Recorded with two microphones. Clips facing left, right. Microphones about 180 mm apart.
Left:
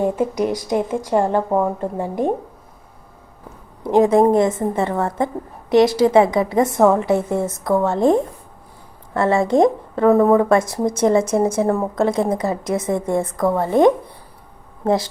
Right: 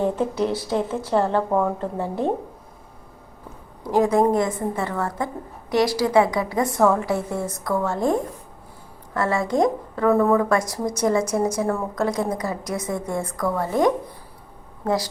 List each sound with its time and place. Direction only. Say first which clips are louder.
0.0 s speech: left 3 dB; 10° left (ahead or behind)
3.8 s a woman's voice: left 5 dB; 20° left (ahead or behind)